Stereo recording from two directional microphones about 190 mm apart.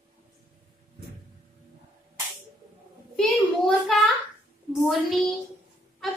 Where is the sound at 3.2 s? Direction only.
Centre (ahead or behind).